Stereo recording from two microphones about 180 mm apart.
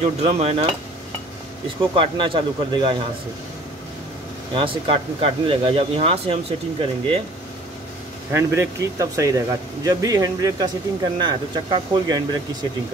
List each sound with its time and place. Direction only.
0.0 s speech: 30° right (ahead or behind)
1.8 s speech: 30° right (ahead or behind)
4.6 s speech: 30° right (ahead or behind)
8.3 s speech: 15° right (ahead or behind)